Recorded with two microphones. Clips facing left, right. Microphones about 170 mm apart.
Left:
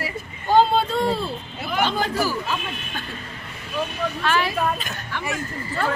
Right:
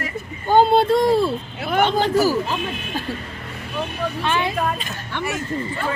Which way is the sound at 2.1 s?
40° right (ahead or behind).